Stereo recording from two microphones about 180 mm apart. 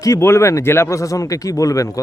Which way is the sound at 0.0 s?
15° left (ahead or behind).